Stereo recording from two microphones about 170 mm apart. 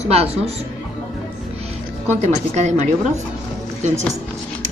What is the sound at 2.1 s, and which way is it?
A woman's voice, 40° right (ahead or behind).